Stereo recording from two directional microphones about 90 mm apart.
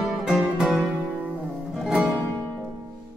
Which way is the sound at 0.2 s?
5° right (ahead or behind).